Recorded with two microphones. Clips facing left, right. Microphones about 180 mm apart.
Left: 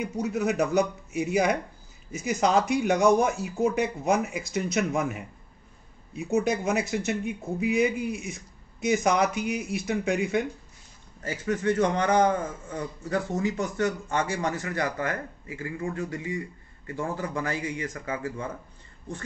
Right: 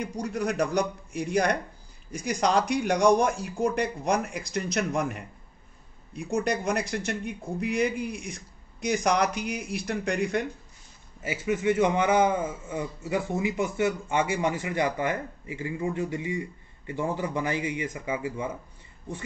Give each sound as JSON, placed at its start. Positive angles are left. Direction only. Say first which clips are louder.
{"t": 0.0, "sound": "speech", "louder": "left 2 dB", "side_deg": 5}
{"t": 11.2, "sound": "a man's voice", "louder": "right 1 dB", "side_deg": -10}